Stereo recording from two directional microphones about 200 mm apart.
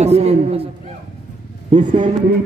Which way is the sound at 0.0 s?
30° right (ahead or behind).